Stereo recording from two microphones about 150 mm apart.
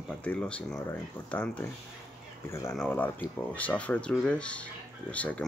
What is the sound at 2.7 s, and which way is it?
Speech, 10° left (ahead or behind).